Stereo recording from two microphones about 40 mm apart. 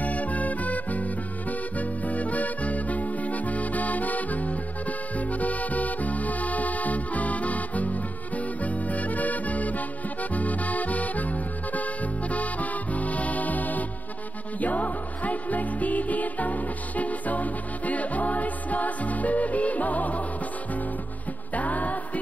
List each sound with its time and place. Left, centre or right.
0.0 s music: left
21.5 s music: left